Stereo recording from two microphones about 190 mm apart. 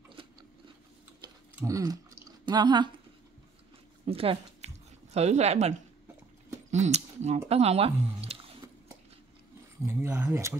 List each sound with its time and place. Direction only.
0.1 s biting: 25° right (ahead or behind)
1.5 s typing: 15° right (ahead or behind)
4.0 s a sound: 30° right (ahead or behind)
6.7 s speech: 35° right (ahead or behind)
8.6 s a sound: 15° right (ahead or behind)
9.8 s speech: 15° right (ahead or behind)